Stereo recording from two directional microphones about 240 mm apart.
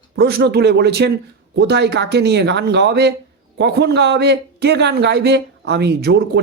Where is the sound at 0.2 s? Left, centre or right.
Right.